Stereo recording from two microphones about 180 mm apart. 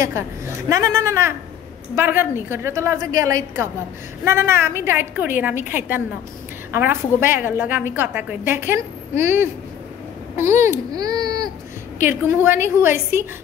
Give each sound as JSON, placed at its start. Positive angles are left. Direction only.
{"t": 0.7, "sound": "a woman's voice", "side_deg": -15}